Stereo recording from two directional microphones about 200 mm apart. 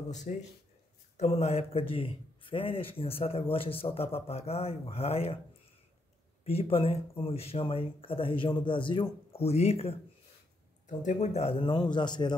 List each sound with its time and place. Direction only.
0.1 s speech: 35° left (ahead or behind)
6.4 s speech: 30° left (ahead or behind)
11.0 s speech: 35° left (ahead or behind)